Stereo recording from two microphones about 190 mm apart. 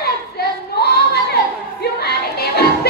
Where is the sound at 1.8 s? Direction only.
55° left (ahead or behind).